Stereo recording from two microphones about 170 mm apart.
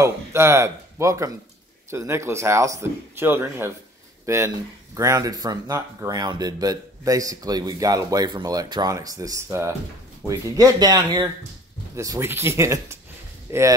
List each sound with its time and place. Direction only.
0.0 s speech: 15° right (ahead or behind)